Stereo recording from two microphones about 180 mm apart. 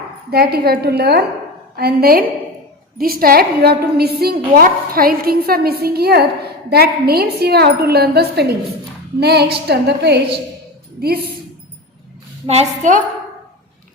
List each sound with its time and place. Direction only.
0.3 s a woman's voice: 60° right (ahead or behind)
12.5 s a woman's voice: 40° right (ahead or behind)